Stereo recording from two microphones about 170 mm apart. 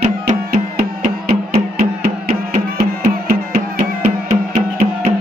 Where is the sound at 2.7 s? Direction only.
65° right (ahead or behind).